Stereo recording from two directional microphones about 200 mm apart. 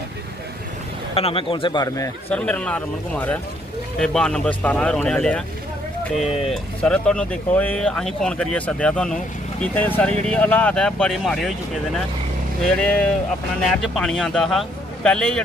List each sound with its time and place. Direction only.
1.1 s speech: 30° left (ahead or behind)
2.3 s speech: 5° left (ahead or behind)
6.5 s speech: 5° left (ahead or behind)